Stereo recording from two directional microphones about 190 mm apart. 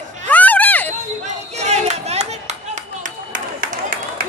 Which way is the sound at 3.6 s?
50° right (ahead or behind).